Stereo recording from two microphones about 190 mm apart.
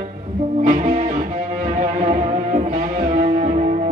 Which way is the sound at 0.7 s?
40° right (ahead or behind).